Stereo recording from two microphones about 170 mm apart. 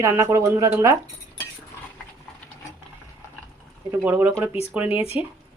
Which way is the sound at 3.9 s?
10° right (ahead or behind).